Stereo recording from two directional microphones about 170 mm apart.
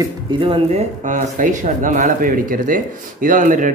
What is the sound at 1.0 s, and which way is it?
Speech, 50° right (ahead or behind).